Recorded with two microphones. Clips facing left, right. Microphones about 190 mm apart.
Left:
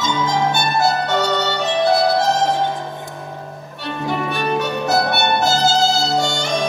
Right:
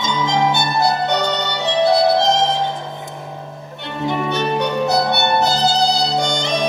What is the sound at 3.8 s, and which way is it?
Music, 20° right (ahead or behind).